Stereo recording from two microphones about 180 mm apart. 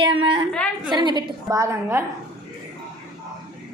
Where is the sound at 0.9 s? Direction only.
25° right (ahead or behind).